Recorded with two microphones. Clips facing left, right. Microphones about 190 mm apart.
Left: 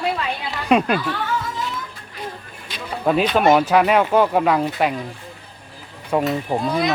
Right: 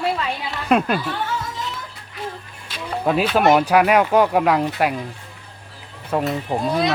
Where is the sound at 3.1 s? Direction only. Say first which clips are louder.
Left 1 dB; 5° right (ahead or behind).